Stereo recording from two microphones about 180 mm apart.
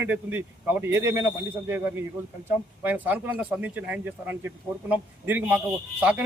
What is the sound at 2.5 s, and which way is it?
Speech, 10° right (ahead or behind).